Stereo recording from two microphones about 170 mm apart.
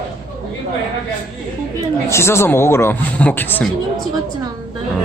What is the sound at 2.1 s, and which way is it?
A man's voice, 15° left (ahead or behind).